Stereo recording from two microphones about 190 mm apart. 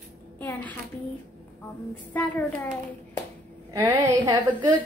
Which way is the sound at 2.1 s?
10° left (ahead or behind).